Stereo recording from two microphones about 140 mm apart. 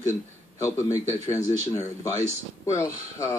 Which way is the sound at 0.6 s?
20° left (ahead or behind).